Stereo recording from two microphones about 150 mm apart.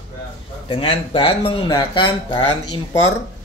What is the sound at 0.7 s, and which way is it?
Speech, 35° left (ahead or behind).